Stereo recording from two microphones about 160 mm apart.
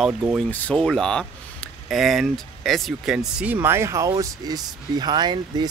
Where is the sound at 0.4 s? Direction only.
5° left (ahead or behind).